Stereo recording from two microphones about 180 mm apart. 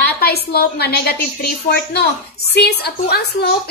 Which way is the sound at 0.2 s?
60° left (ahead or behind).